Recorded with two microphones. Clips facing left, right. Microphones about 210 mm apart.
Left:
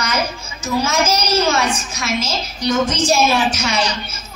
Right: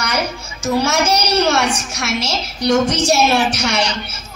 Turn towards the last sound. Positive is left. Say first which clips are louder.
# right 1 dB
turn(degrees=-70)  # may be behind; listen again after turning